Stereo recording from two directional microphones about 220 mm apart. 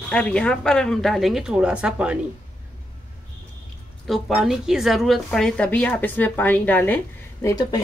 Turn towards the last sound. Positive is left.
turn(degrees=20)  # may be behind; listen again after turning